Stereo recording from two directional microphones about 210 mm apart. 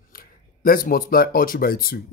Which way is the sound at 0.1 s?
45° left (ahead or behind).